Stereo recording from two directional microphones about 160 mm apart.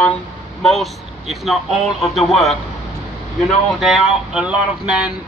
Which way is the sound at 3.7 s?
Centre (ahead or behind).